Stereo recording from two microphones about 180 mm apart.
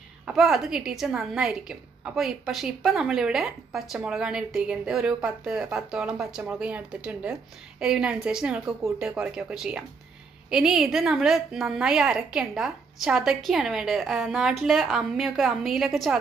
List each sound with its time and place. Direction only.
0.3 s a woman's voice: centre (ahead or behind)